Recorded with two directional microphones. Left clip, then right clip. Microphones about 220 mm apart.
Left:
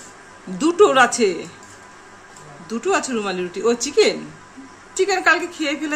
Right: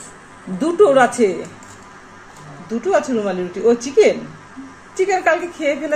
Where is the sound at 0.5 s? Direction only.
20° left (ahead or behind).